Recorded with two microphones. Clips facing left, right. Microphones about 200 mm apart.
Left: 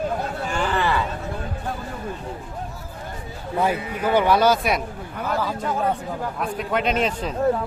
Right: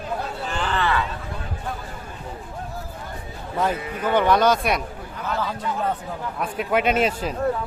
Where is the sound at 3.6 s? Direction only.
10° left (ahead or behind).